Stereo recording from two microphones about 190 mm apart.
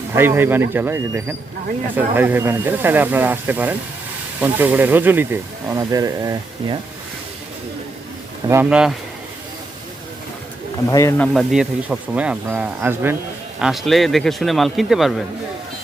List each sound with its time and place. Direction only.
0.1 s speech: 10° right (ahead or behind)
8.4 s speech: 10° right (ahead or behind)
10.9 s speech: 15° left (ahead or behind)
11.3 s speech: 5° right (ahead or behind)